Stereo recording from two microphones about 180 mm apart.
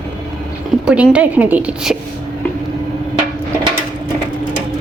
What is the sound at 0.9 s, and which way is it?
A woman's voice, 5° right (ahead or behind).